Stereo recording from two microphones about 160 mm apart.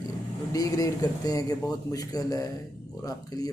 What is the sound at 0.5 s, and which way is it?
Speech, 20° left (ahead or behind).